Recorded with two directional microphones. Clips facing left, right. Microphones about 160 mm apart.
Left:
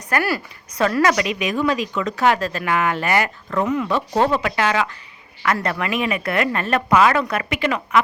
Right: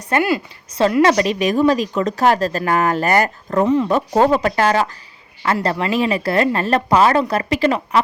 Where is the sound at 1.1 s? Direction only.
35° right (ahead or behind).